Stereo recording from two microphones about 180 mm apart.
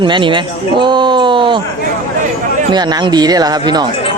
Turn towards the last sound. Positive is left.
turn(degrees=-25)  # may be behind; listen again after turning